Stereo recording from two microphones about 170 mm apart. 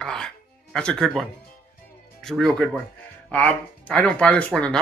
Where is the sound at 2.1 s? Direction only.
5° left (ahead or behind).